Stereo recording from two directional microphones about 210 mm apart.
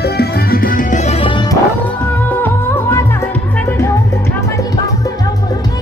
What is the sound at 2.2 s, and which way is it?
Music, 10° left (ahead or behind).